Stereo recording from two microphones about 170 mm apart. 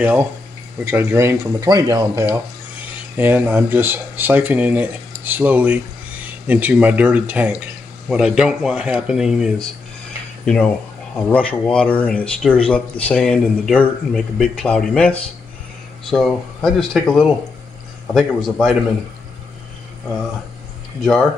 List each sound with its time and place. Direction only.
0.0 s speech: 10° right (ahead or behind)